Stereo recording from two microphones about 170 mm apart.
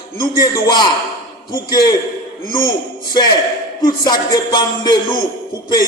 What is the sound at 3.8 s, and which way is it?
Speech, 25° left (ahead or behind).